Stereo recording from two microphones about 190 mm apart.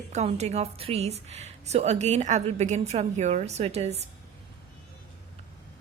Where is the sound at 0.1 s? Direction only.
35° right (ahead or behind).